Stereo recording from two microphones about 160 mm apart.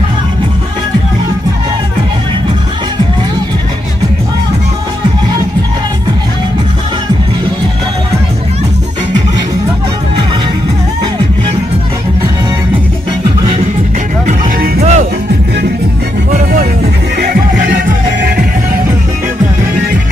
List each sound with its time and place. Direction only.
14.8 s music: 45° right (ahead or behind)
17.2 s music: 65° right (ahead or behind)